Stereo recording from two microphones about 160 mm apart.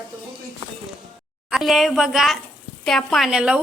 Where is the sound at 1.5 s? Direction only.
Centre (ahead or behind).